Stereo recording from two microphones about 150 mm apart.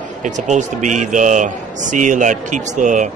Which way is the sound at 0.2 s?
55° right (ahead or behind).